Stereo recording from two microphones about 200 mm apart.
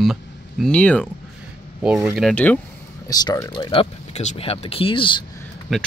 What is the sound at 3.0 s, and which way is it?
Speech, 20° left (ahead or behind).